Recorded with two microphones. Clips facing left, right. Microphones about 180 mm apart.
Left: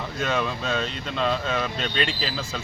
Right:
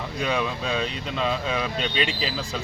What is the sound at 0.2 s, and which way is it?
Speech, centre (ahead or behind).